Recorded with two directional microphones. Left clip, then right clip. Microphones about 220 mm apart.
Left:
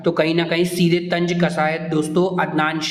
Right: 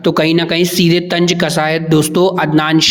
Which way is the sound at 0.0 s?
35° right (ahead or behind).